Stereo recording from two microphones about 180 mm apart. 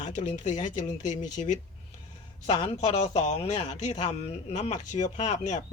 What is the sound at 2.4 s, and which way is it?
A man's voice, 25° left (ahead or behind).